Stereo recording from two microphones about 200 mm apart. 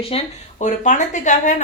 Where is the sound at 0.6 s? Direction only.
40° left (ahead or behind).